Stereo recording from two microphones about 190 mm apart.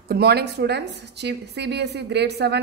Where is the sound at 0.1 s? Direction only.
55° right (ahead or behind).